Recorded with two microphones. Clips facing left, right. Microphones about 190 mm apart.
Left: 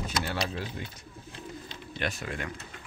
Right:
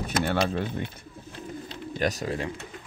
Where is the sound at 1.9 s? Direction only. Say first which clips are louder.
Right 7 dB; 40° right (ahead or behind).